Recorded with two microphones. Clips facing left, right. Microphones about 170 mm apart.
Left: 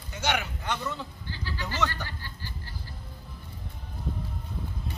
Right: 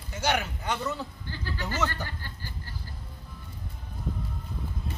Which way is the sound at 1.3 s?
50° right (ahead or behind).